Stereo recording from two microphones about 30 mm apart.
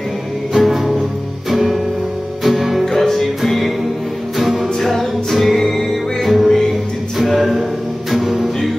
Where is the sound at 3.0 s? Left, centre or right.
Centre.